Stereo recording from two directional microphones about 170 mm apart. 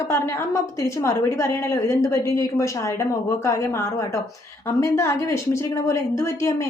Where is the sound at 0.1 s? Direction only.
15° left (ahead or behind).